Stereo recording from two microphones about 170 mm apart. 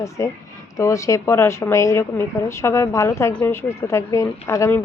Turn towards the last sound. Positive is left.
turn(degrees=15)  # may be behind; listen again after turning